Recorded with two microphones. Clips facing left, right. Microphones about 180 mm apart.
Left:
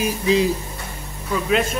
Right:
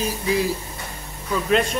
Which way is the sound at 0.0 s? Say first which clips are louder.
Left 4 dB; 20° left (ahead or behind).